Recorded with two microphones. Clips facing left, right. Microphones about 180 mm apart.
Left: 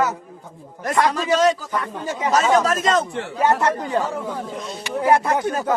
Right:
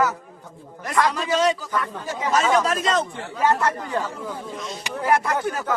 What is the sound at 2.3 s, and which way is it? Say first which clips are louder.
Speech: left 2 dB; 40° left (ahead or behind).